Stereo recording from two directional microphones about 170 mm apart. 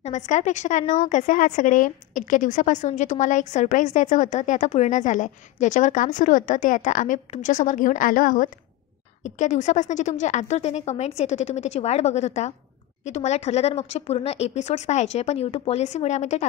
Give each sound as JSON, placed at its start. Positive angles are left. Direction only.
{"t": 0.0, "sound": "a woman's voice", "side_deg": 45}